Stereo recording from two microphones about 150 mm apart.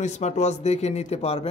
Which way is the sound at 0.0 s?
50° left (ahead or behind).